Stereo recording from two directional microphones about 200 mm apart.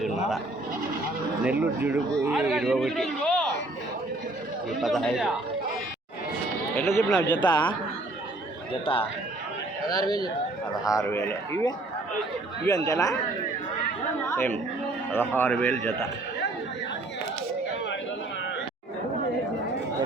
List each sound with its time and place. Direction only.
1.5 s a man's voice: 10° right (ahead or behind)
4.8 s a man's voice: centre (ahead or behind)
6.7 s speech: 10° left (ahead or behind)
8.8 s speech: 30° left (ahead or behind)
14.3 s speech: 10° left (ahead or behind)